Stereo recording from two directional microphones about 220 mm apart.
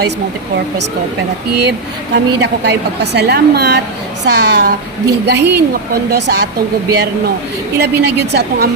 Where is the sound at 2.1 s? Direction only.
50° right (ahead or behind).